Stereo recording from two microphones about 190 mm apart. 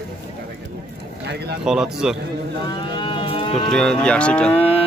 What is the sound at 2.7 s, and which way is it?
Livestock, 25° left (ahead or behind).